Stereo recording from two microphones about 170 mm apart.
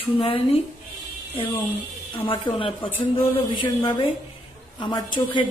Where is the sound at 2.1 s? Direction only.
30° left (ahead or behind).